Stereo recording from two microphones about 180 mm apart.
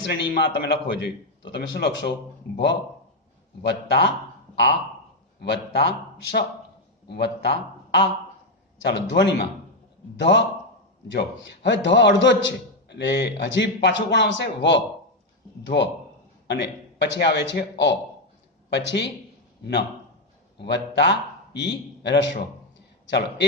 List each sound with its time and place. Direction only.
0.0 s a man's voice: 70° left (ahead or behind)
3.6 s a man's voice: 75° left (ahead or behind)
5.4 s a man's voice: 75° left (ahead or behind)
20.6 s a man's voice: 75° left (ahead or behind)